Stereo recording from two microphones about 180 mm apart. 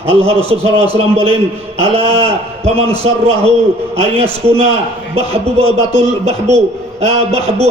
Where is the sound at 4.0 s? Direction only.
35° right (ahead or behind).